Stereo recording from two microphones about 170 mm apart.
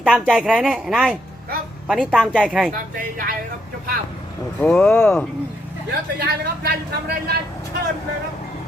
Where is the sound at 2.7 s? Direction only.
55° right (ahead or behind).